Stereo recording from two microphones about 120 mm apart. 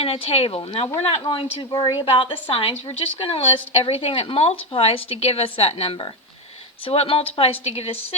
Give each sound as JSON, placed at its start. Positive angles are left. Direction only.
{"t": 0.0, "sound": "speech", "side_deg": 55}
{"t": 1.2, "sound": "speech", "side_deg": 45}